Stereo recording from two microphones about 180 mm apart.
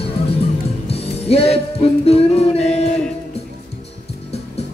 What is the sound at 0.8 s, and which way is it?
Music, 35° left (ahead or behind).